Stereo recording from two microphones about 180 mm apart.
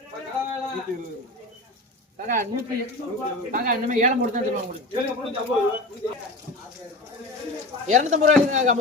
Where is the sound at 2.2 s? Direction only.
50° right (ahead or behind).